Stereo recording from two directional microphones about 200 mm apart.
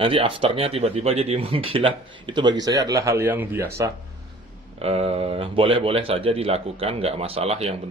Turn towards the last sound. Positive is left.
turn(degrees=-30)  # may be behind; listen again after turning